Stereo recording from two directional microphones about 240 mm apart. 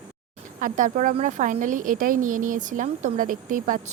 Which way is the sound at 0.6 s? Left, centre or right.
Right.